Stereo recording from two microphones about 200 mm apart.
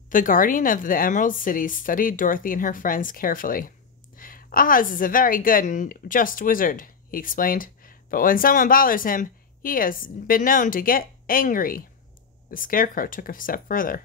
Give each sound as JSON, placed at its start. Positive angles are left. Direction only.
{"t": 0.1, "sound": "a woman's voice", "side_deg": 45}